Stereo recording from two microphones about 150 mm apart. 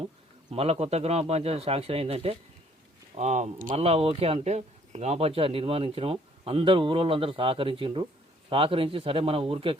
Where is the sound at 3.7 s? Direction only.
45° right (ahead or behind).